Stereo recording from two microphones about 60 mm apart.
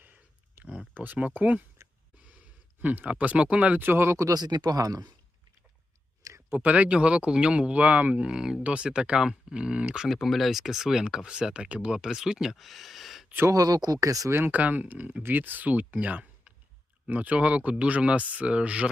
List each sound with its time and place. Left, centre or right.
0.5 s a sound: right
0.9 s speech: right
2.8 s speech: right
4.2 s speech: right
6.5 s speech: right
8.3 s speech: centre
10.1 s speech: centre
11.9 s speech: centre
13.5 s speech: right
14.3 s speech: right
14.6 s speech: right